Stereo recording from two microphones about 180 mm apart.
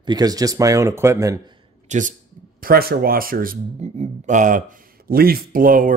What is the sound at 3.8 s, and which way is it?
Speech, 40° right (ahead or behind).